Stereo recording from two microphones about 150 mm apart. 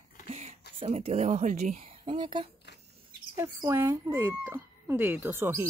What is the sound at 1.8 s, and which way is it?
Speech, 35° right (ahead or behind).